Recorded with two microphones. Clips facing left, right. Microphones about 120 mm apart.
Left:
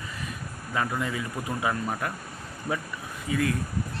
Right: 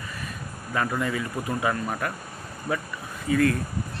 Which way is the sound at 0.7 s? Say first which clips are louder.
Right 2 dB; 10° left (ahead or behind).